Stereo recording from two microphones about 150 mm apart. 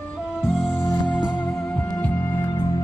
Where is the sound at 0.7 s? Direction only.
15° left (ahead or behind).